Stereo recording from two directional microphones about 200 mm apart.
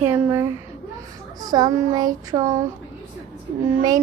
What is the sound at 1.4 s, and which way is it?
Speech, 20° right (ahead or behind).